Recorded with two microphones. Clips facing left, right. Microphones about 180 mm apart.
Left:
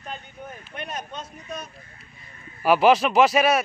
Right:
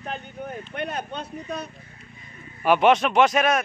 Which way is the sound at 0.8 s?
60° right (ahead or behind).